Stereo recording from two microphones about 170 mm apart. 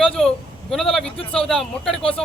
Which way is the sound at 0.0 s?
Centre (ahead or behind).